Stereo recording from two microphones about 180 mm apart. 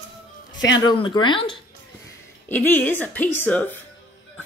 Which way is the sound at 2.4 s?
10° left (ahead or behind).